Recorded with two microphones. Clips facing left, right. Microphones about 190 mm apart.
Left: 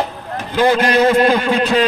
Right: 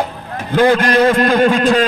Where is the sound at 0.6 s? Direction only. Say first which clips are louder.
Right 2 dB; 55° right (ahead or behind).